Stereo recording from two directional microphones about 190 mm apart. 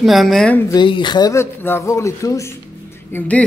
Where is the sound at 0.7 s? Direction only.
25° left (ahead or behind); by 3.4 s 10° left (ahead or behind).